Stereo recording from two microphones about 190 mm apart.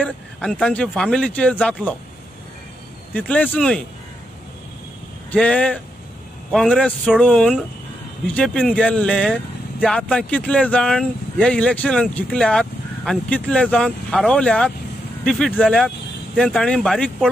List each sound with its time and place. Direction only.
0.0 s speech: 5° left (ahead or behind)
3.1 s speech: 10° left (ahead or behind)
5.3 s speech: 5° left (ahead or behind)